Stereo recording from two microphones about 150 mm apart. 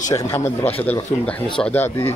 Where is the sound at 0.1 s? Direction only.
20° left (ahead or behind).